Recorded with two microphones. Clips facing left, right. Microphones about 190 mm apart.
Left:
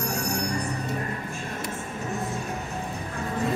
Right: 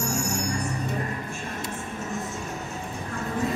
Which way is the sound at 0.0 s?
60° left (ahead or behind).